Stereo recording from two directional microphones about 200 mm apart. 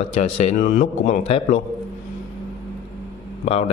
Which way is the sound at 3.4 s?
35° left (ahead or behind).